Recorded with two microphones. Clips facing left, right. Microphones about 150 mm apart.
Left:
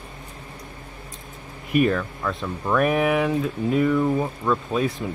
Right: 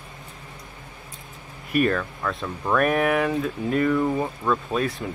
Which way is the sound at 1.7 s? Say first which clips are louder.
Left 2 dB; 15° left (ahead or behind).